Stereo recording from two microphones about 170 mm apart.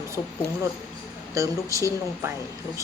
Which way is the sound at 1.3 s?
20° right (ahead or behind).